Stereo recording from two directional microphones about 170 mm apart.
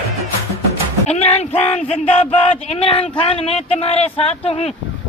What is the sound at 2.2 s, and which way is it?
Speech, 35° left (ahead or behind).